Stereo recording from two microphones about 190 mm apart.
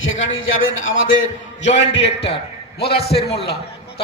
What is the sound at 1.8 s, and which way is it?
A man's voice, 65° left (ahead or behind).